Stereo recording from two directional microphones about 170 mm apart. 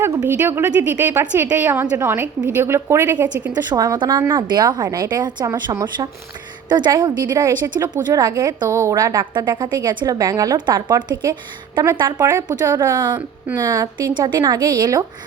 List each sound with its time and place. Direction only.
0.0 s a woman's voice: 10° right (ahead or behind)
3.5 s a woman's voice: 20° right (ahead or behind)
12.2 s a woman's voice: 15° right (ahead or behind)